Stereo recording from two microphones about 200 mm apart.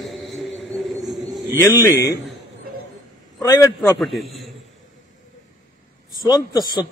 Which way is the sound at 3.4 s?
15° left (ahead or behind).